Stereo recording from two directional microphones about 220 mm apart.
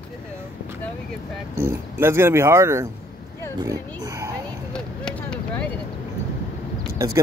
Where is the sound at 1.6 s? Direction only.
10° right (ahead or behind).